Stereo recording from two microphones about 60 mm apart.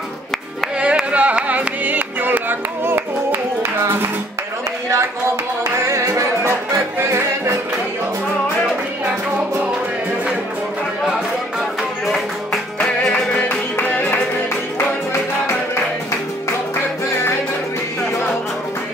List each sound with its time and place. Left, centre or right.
0.7 s music: centre
2.8 s music: right
4.9 s music: right
7.0 s music: right
12.7 s music: centre
13.3 s music: left